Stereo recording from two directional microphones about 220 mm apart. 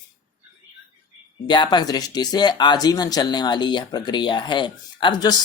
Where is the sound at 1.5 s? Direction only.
20° left (ahead or behind).